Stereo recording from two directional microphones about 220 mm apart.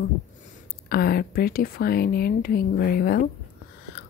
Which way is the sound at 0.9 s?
45° left (ahead or behind).